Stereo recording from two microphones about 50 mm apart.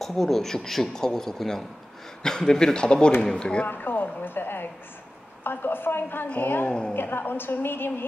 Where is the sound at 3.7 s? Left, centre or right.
Left.